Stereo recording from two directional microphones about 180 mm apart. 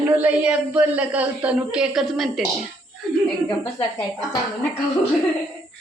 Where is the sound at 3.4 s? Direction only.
20° left (ahead or behind).